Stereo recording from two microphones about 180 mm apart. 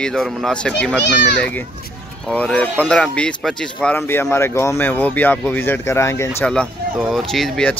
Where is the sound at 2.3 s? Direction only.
5° left (ahead or behind).